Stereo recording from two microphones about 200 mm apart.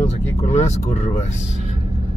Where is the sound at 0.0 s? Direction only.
35° left (ahead or behind).